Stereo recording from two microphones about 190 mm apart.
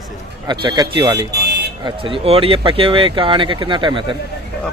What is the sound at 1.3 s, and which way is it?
Car alarm, 60° right (ahead or behind).